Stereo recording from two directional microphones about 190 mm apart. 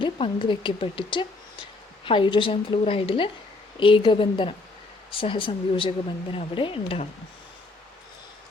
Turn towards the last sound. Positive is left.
turn(degrees=30)  # may be behind; listen again after turning